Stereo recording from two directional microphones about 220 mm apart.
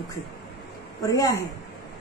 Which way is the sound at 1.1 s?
15° left (ahead or behind).